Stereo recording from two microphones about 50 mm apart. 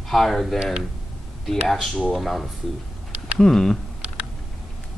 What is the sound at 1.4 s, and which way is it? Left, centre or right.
Speech, centre.